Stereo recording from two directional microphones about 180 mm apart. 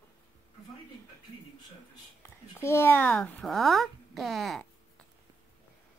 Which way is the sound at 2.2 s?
15° left (ahead or behind).